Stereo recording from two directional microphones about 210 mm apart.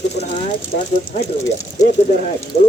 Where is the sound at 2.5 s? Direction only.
30° left (ahead or behind).